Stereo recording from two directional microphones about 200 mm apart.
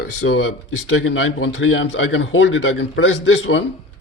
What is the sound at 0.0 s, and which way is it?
Speech, 65° left (ahead or behind).